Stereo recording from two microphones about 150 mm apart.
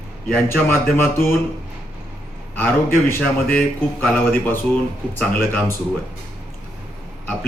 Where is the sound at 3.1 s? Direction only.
10° left (ahead or behind).